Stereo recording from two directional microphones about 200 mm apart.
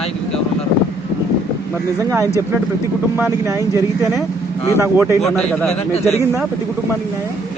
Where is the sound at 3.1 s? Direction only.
10° right (ahead or behind).